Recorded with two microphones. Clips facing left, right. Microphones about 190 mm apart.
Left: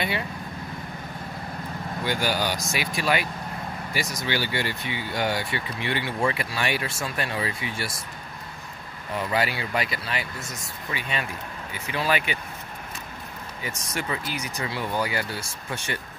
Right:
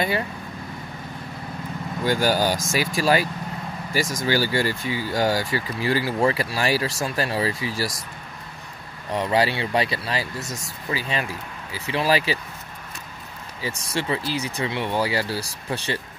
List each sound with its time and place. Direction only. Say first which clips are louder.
2.0 s speech: right 6 dB; 40° right (ahead or behind)
3.9 s speech: right 6 dB; 45° right (ahead or behind)
9.1 s speech: right 5 dB; 30° right (ahead or behind)
13.6 s speech: right 5 dB; 30° right (ahead or behind)